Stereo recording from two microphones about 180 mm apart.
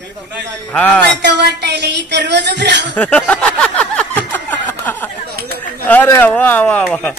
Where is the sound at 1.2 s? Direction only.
70° right (ahead or behind).